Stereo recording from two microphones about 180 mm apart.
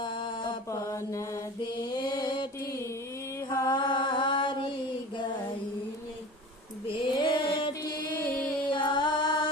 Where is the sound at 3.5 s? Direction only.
20° left (ahead or behind).